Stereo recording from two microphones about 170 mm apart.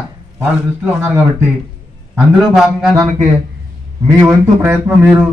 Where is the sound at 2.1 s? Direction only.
Centre (ahead or behind).